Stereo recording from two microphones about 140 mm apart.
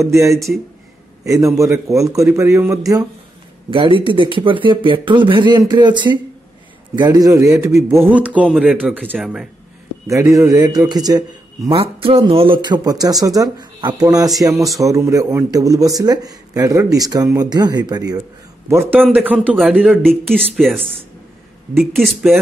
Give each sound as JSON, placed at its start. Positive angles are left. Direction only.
{"t": 0.0, "sound": "speech", "side_deg": -20}
{"t": 3.7, "sound": "speech", "side_deg": -35}
{"t": 10.0, "sound": "speech", "side_deg": -20}
{"t": 11.7, "sound": "speech", "side_deg": -40}
{"t": 18.7, "sound": "speech", "side_deg": -15}
{"t": 20.1, "sound": "speech", "side_deg": 5}